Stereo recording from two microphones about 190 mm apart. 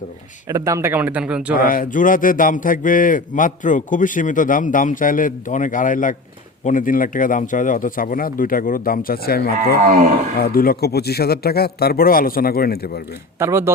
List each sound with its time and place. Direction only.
0.4 s speech: 15° right (ahead or behind)
1.5 s a man's voice: 50° left (ahead or behind)
13.4 s speech: 15° right (ahead or behind)